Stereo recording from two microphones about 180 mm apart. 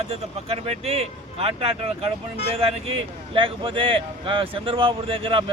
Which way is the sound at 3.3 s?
30° right (ahead or behind).